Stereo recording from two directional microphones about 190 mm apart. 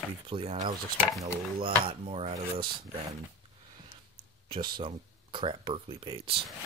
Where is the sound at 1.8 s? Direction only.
30° right (ahead or behind).